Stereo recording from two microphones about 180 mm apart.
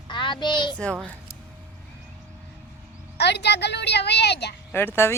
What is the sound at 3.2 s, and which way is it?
A woman's voice, 70° left (ahead or behind).